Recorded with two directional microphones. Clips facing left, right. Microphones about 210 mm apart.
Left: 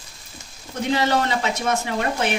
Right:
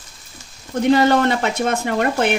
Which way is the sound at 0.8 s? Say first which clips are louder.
Right 7 dB; 55° right (ahead or behind).